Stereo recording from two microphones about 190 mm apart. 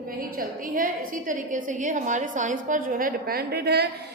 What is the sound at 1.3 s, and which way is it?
A woman's voice, 40° right (ahead or behind).